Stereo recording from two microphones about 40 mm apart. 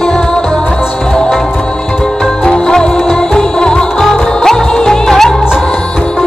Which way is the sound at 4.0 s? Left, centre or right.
Centre.